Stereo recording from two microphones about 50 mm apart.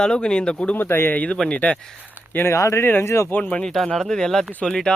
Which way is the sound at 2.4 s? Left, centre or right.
Left.